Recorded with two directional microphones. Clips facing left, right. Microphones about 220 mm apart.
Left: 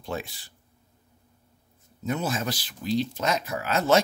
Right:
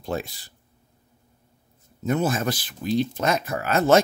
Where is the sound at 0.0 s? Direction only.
40° right (ahead or behind).